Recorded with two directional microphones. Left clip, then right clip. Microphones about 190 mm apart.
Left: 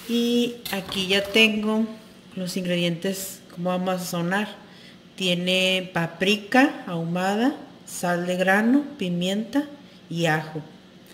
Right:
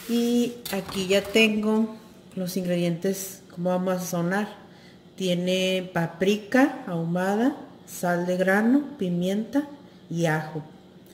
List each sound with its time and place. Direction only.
0.1 s speech: 20° right (ahead or behind)